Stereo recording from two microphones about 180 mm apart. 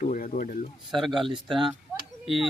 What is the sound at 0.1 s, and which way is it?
Speech, 50° left (ahead or behind).